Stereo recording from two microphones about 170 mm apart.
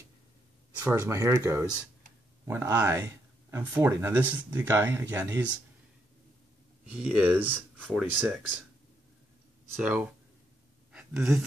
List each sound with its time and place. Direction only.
0.7 s speech: 15° right (ahead or behind)
6.9 s speech: 10° right (ahead or behind)
9.7 s speech: 5° right (ahead or behind)
10.9 s a sound: 5° right (ahead or behind)